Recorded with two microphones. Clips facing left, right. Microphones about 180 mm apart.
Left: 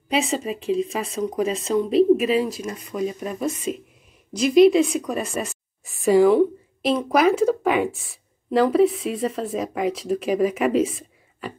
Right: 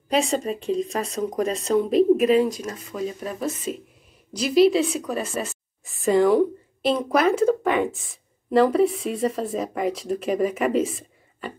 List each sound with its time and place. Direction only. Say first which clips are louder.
0.1 s speech: right 1 dB; 5° left (ahead or behind)
4.4 s a woman's voice: left 3 dB; 35° right (ahead or behind)
4.6 s a woman's voice: left 3 dB; centre (ahead or behind)